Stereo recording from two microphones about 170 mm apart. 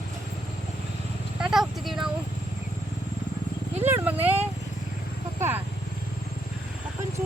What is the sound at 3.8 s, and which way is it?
Vehicle, 15° right (ahead or behind).